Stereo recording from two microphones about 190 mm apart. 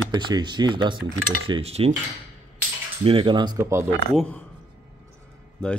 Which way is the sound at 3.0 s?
30° right (ahead or behind).